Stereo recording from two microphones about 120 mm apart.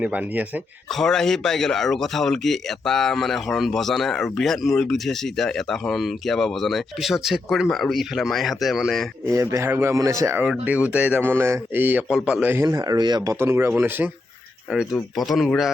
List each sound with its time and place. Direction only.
0.0 s speech: 10° right (ahead or behind)
0.9 s speech: 5° left (ahead or behind)
9.2 s speech: 25° right (ahead or behind)
10.4 s speech: 10° right (ahead or behind)
12.6 s speech: 30° right (ahead or behind)
13.3 s speech: 20° right (ahead or behind); by 15.7 s centre (ahead or behind)